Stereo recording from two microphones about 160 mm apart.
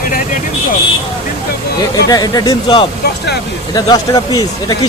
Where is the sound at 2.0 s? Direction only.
25° left (ahead or behind).